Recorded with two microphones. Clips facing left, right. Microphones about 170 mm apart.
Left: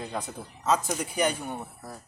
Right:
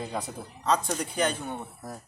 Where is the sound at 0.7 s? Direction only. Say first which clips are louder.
Even; 5° left (ahead or behind).